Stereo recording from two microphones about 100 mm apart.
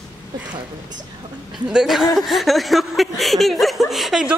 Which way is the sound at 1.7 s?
5° right (ahead or behind).